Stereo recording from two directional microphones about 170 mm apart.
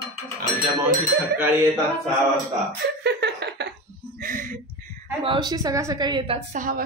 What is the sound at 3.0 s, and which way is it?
Laughter, 85° right.